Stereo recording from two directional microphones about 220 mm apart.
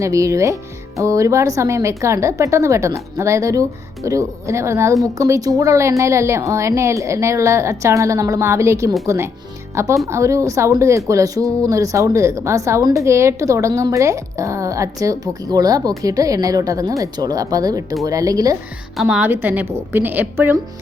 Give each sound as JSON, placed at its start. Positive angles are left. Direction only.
{"t": 0.0, "sound": "a woman's voice", "side_deg": -15}
{"t": 18.9, "sound": "a woman's voice", "side_deg": -5}